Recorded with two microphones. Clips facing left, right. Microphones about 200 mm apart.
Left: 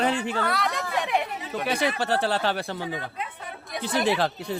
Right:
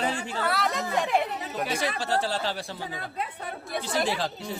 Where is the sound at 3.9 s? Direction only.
60° left (ahead or behind).